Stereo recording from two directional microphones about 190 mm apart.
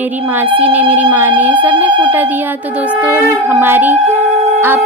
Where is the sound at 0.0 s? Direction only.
10° right (ahead or behind).